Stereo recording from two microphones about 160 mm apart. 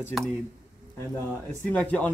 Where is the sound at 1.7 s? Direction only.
10° left (ahead or behind).